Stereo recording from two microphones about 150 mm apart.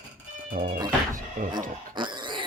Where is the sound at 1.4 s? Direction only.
60° right (ahead or behind).